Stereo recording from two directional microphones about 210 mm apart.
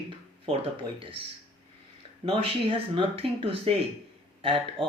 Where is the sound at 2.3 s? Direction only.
25° right (ahead or behind).